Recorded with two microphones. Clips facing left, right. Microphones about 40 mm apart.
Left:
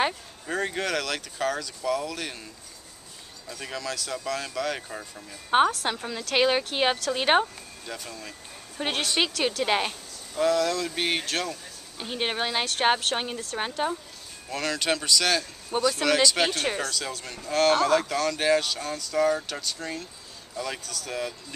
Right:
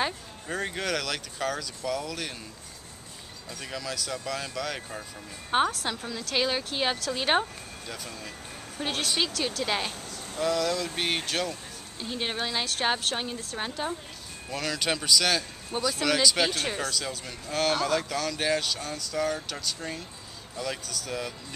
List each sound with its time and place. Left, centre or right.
0.5 s speech: centre
3.4 s speech: centre
5.5 s speech: centre
6.3 s speech: left
7.8 s speech: centre
8.8 s speech: centre
9.2 s a woman's voice: left
9.6 s speech: centre
10.4 s speech: centre
12.0 s speech: left
14.5 s speech: centre
16.8 s speech: centre